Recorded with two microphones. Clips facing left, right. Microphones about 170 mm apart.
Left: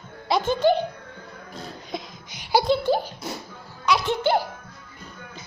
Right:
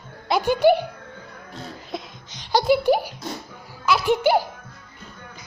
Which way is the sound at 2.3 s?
10° left (ahead or behind).